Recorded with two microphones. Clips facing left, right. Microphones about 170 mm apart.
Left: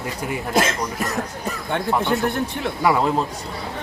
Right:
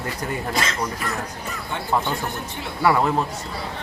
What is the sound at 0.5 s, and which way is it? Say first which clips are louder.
Speech: left 4 dB; 50° left (ahead or behind).